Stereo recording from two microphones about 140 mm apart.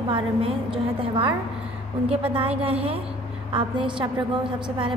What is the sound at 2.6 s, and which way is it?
A woman's voice, 40° right (ahead or behind).